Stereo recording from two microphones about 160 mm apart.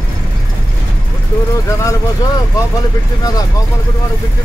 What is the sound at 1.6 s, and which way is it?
Speech, 20° left (ahead or behind).